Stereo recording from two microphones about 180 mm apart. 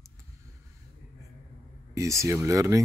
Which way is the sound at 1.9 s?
15° right (ahead or behind).